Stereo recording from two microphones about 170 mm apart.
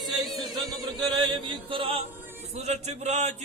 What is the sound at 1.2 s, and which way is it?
Chant, 30° right (ahead or behind).